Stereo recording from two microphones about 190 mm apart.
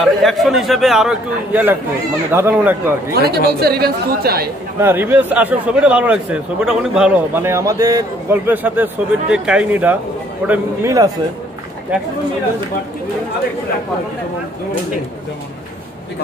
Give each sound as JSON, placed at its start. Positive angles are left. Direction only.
{"t": 0.0, "sound": "a man's voice", "side_deg": 0}
{"t": 3.2, "sound": "speech", "side_deg": -55}
{"t": 4.7, "sound": "speech", "side_deg": -10}